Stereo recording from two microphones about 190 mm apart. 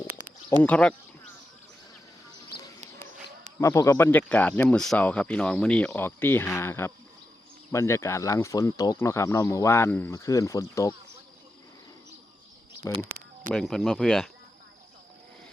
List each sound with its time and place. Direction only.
0.6 s speech: 5° left (ahead or behind)
2.8 s a sound: 40° right (ahead or behind)
3.6 s speech: 15° left (ahead or behind)
13.5 s speech: centre (ahead or behind)